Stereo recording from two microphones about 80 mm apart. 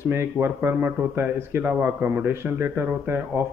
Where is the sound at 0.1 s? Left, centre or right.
Right.